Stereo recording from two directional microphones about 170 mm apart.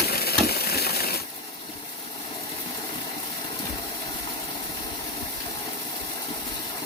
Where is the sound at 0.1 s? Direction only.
65° left (ahead or behind).